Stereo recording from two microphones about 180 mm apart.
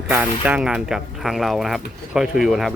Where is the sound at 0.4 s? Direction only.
5° right (ahead or behind).